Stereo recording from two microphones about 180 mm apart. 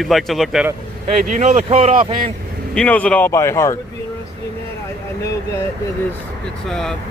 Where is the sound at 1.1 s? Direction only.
40° right (ahead or behind).